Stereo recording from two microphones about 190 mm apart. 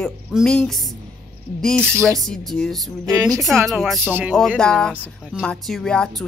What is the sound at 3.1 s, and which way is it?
Speech, 20° right (ahead or behind).